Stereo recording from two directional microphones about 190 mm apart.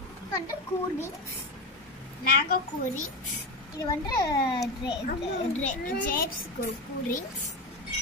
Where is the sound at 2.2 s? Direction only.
50° left (ahead or behind).